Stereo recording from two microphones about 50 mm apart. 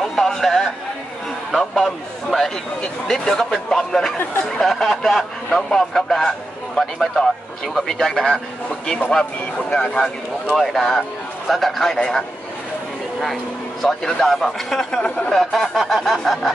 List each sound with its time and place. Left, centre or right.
0.0 s a sound: centre
1.5 s a man's voice: centre
3.1 s a man's voice: centre
8.3 s a man's voice: centre
10.5 s a man's voice: centre
15.0 s a man's voice: centre
15.3 s a man's voice: centre